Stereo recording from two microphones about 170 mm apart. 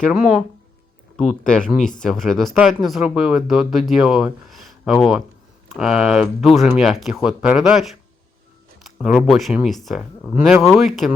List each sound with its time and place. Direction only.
0.0 s speech: centre (ahead or behind)